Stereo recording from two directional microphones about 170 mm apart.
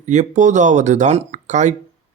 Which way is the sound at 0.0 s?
45° right (ahead or behind).